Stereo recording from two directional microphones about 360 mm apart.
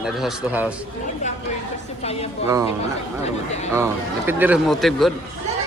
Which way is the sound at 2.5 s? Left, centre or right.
Centre.